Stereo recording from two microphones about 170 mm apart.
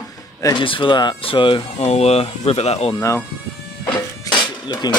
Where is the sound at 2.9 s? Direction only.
20° left (ahead or behind).